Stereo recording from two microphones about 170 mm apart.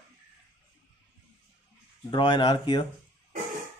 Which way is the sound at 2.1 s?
30° left (ahead or behind).